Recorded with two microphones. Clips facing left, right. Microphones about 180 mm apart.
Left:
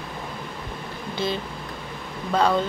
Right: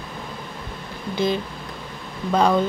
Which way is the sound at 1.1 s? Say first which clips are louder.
Right 5 dB; 15° right (ahead or behind).